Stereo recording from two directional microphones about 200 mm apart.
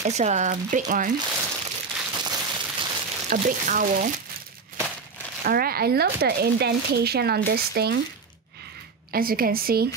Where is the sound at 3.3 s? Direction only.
40° right (ahead or behind).